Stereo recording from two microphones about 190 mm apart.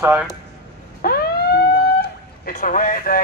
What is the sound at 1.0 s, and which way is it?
Police car, 50° left (ahead or behind).